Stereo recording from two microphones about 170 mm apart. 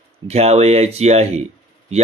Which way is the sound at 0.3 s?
40° right (ahead or behind).